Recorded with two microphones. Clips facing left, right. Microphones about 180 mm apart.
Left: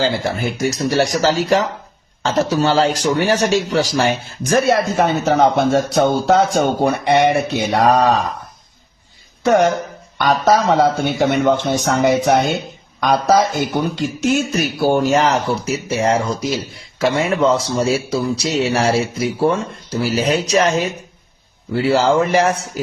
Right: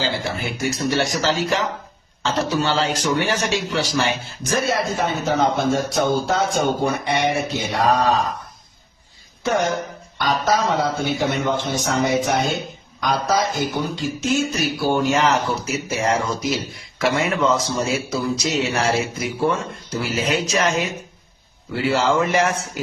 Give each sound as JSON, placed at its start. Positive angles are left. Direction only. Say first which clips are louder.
{"t": 0.0, "sound": "speech", "louder": "left 6 dB", "side_deg": 45}
{"t": 4.5, "sound": "speech", "louder": "left 6 dB", "side_deg": 70}
{"t": 9.4, "sound": "speech", "louder": "left 7 dB", "side_deg": 70}